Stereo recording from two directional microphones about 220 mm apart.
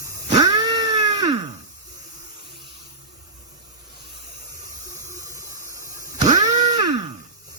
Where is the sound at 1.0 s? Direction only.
15° right (ahead or behind).